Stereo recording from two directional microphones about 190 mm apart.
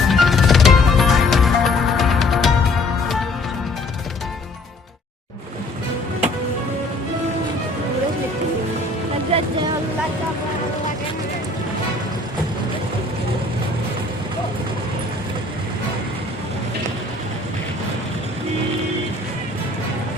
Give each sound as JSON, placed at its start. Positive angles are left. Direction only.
{"t": 0.1, "sound": "music", "side_deg": 0}
{"t": 9.3, "sound": "vehicle", "side_deg": -30}